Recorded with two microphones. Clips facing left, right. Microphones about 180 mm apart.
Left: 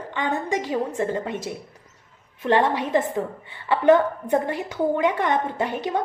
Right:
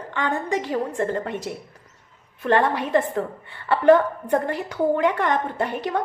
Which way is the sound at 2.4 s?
20° left (ahead or behind).